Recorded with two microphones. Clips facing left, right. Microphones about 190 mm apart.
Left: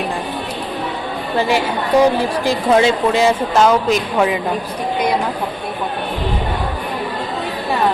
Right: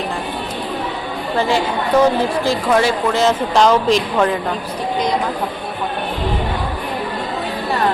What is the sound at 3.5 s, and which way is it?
Speech, 5° left (ahead or behind).